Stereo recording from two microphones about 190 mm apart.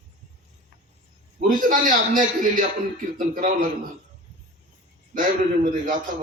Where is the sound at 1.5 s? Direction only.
45° right (ahead or behind).